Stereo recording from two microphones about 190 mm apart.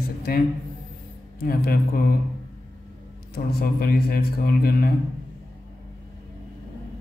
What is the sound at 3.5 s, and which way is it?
Speech, 55° left (ahead or behind).